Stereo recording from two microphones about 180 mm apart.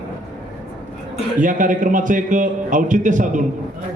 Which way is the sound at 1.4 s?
45° right (ahead or behind).